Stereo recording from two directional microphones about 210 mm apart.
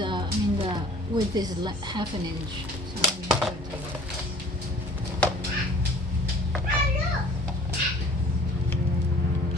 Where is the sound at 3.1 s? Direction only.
5° right (ahead or behind).